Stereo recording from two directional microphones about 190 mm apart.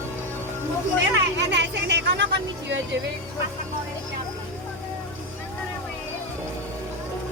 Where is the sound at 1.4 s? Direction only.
65° right (ahead or behind).